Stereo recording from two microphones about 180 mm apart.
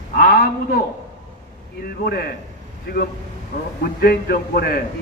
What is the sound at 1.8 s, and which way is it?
A man's voice, 60° left (ahead or behind).